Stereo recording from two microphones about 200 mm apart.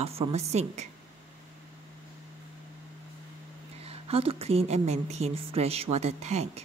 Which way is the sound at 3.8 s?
30° right (ahead or behind).